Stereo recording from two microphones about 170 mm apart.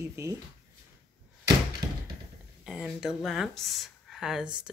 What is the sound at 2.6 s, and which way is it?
Speech, centre (ahead or behind).